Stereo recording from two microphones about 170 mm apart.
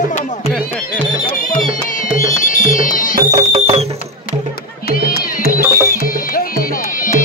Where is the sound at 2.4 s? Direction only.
50° left (ahead or behind).